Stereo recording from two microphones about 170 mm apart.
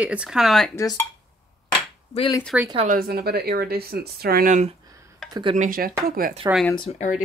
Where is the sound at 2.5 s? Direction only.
5° right (ahead or behind).